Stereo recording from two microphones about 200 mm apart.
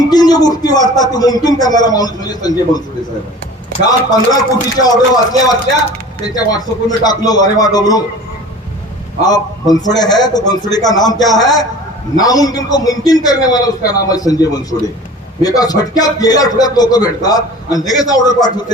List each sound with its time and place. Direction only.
0.0 s a man's voice: 20° left (ahead or behind)
3.8 s a man's voice: 20° left (ahead or behind)
9.2 s a man's voice: 20° left (ahead or behind)